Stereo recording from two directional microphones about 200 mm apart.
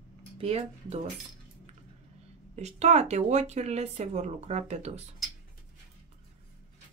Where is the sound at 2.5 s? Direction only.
35° right (ahead or behind).